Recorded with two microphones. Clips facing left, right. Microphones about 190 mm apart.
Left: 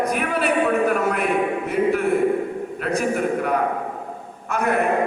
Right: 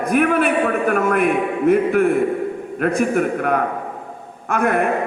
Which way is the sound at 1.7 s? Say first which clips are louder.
Right 5 dB; 55° right (ahead or behind).